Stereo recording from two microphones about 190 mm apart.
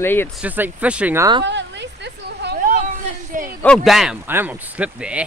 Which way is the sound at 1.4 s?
65° right (ahead or behind).